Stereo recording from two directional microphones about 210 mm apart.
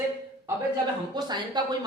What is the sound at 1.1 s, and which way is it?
Speech, 20° right (ahead or behind).